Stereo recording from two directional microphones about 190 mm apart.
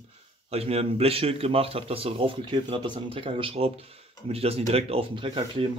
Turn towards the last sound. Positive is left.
turn(degrees=-30)  # may be behind; listen again after turning